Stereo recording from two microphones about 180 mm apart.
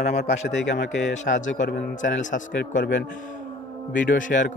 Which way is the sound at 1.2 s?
45° left (ahead or behind).